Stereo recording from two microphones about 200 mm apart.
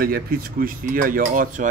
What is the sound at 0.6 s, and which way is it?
Speech, 45° right (ahead or behind).